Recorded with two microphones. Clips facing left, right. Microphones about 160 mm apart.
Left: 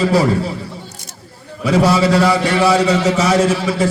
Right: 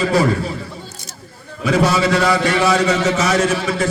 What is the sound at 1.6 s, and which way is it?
A man's voice, 35° left (ahead or behind).